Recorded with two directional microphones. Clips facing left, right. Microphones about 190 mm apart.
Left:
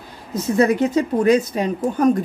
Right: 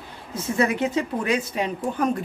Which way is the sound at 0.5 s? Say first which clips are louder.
Left 6 dB; 40° left (ahead or behind).